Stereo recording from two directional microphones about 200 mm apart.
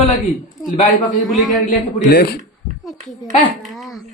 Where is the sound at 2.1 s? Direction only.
55° left (ahead or behind).